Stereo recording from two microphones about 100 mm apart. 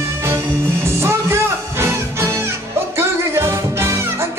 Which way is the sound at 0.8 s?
25° right (ahead or behind).